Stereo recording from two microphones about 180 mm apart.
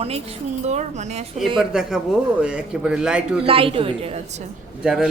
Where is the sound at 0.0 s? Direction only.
35° right (ahead or behind).